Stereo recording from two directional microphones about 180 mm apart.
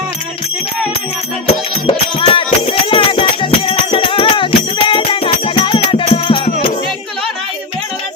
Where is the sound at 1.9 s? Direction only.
30° left (ahead or behind).